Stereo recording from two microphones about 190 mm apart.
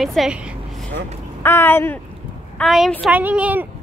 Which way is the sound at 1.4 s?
10° left (ahead or behind).